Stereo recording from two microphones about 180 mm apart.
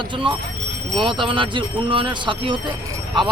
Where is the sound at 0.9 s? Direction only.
25° right (ahead or behind).